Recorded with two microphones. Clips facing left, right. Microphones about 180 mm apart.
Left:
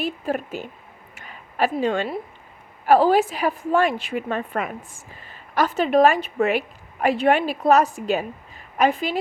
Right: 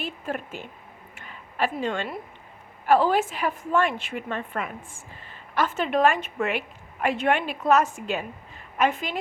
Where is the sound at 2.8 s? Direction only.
40° left (ahead or behind).